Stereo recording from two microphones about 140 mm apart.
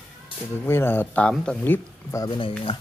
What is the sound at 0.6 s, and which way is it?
Speech, 15° left (ahead or behind).